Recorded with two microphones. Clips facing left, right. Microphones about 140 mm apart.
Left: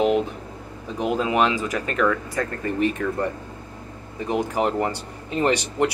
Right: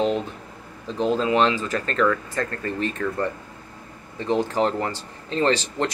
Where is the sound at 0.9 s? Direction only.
15° left (ahead or behind).